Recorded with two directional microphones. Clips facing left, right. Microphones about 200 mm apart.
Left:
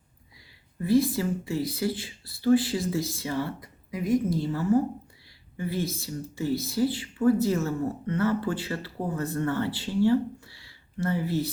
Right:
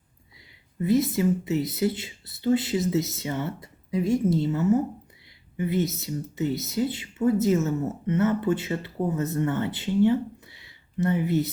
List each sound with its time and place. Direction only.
0.8 s speech: 20° right (ahead or behind)